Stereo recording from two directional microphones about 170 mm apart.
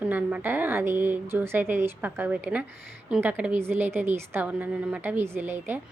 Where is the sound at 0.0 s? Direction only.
10° right (ahead or behind).